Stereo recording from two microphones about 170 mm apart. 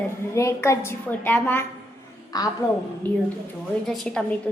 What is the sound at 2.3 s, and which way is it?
Speech, 25° left (ahead or behind).